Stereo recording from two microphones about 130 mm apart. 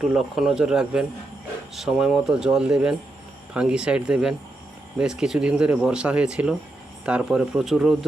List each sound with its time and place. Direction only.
0.0 s speech: 5° right (ahead or behind)